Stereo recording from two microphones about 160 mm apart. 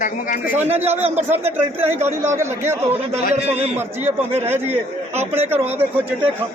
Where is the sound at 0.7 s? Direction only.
40° right (ahead or behind).